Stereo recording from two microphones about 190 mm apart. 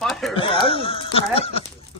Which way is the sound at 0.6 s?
30° left (ahead or behind).